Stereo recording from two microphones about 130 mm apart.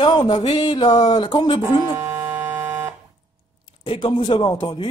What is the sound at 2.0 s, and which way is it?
Buzzer, 15° right (ahead or behind).